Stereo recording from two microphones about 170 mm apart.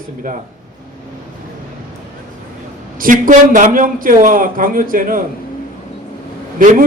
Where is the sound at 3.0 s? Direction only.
50° right (ahead or behind).